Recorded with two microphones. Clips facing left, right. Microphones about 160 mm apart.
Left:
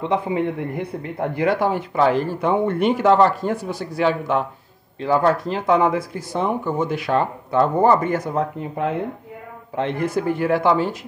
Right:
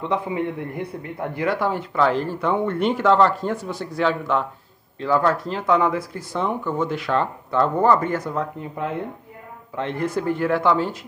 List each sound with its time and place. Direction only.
0.0 s speech: 20° left (ahead or behind)